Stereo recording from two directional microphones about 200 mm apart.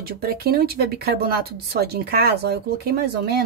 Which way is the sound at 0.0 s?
50° right (ahead or behind).